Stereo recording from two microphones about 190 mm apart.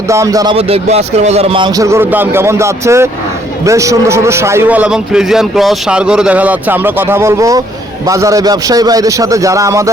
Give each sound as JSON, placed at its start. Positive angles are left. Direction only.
{"t": 0.1, "sound": "a man's voice", "side_deg": -15}
{"t": 0.5, "sound": "a man's voice", "side_deg": -35}